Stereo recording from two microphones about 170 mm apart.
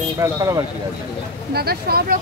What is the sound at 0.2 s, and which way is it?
Speech, 20° right (ahead or behind).